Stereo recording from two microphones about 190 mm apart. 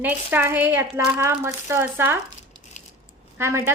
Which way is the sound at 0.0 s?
10° right (ahead or behind).